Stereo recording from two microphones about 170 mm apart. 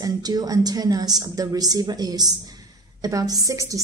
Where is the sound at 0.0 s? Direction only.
20° right (ahead or behind).